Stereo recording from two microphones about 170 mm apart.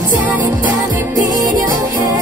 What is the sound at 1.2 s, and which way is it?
Music, 20° right (ahead or behind).